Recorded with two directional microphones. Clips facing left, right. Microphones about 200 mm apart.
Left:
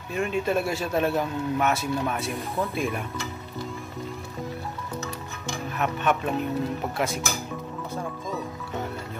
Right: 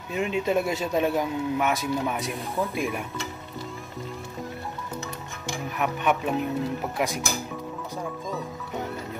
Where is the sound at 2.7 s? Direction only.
15° right (ahead or behind).